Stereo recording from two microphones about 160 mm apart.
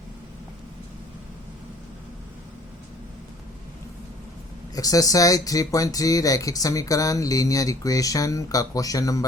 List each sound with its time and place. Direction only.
4.7 s speech: 20° left (ahead or behind)